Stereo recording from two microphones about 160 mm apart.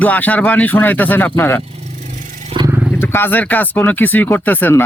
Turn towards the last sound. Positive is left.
turn(degrees=15)  # may be behind; listen again after turning